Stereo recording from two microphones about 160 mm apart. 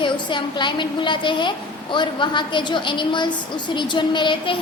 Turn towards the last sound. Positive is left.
turn(degrees=30)  # may be behind; listen again after turning